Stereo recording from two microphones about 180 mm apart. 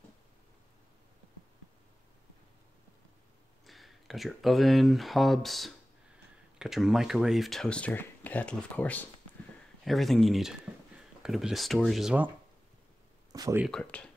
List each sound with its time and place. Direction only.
3.6 s speech: centre (ahead or behind)
13.3 s speech: 20° right (ahead or behind)
13.7 s speech: 5° left (ahead or behind)